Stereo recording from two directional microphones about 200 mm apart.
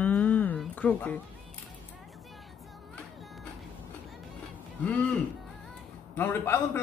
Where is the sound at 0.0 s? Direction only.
10° left (ahead or behind).